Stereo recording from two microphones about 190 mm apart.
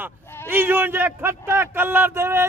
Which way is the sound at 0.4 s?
10° right (ahead or behind).